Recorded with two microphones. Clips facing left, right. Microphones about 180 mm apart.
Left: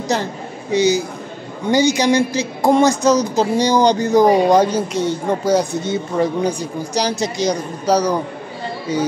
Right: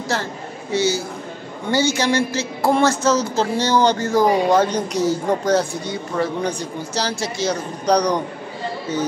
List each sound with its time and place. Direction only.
0.1 s a man's voice: 15° left (ahead or behind); by 5.4 s centre (ahead or behind)
5.4 s a woman's voice: 15° left (ahead or behind)
7.8 s a man's voice: 5° left (ahead or behind)